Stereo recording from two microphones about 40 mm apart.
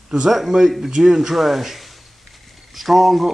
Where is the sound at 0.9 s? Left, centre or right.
Centre.